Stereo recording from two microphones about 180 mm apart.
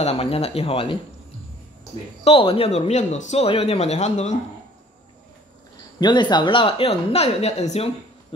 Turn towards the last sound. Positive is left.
turn(degrees=35)  # may be behind; listen again after turning